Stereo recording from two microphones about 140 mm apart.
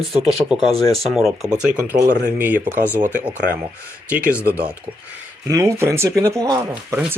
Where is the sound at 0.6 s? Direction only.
30° left (ahead or behind).